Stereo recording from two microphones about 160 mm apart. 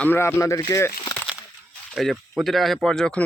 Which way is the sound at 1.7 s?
Centre (ahead or behind).